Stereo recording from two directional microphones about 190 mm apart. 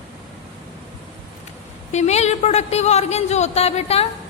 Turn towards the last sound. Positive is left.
turn(degrees=35)  # may be behind; listen again after turning